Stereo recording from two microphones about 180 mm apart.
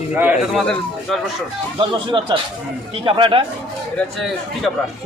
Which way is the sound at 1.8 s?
25° right (ahead or behind).